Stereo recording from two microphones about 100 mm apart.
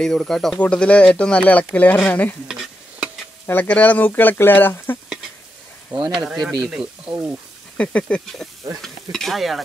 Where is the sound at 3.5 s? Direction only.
20° left (ahead or behind).